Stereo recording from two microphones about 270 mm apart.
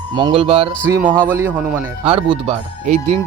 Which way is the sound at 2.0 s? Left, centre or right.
Centre.